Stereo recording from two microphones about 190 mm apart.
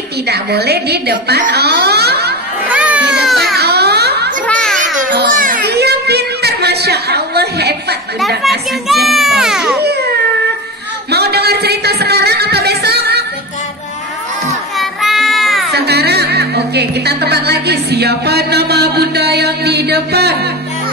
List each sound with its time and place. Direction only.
0.3 s a woman's voice: 60° right (ahead or behind)
2.7 s baby cry: 5° right (ahead or behind)
3.5 s baby cry: 60° right (ahead or behind)
4.5 s children playing: 5° left (ahead or behind)
5.1 s a sound: 45° right (ahead or behind)
8.4 s a child's voice: centre (ahead or behind)
9.0 s music: centre (ahead or behind)
9.8 s music: 60° right (ahead or behind)
11.1 s a sound: 55° right (ahead or behind)
14.8 s child singing: centre (ahead or behind)
15.7 s speech: 60° right (ahead or behind)